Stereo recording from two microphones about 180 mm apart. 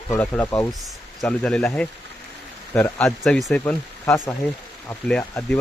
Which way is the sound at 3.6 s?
15° left (ahead or behind).